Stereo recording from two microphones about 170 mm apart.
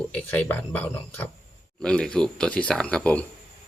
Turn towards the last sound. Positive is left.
turn(degrees=5)  # may be behind; listen again after turning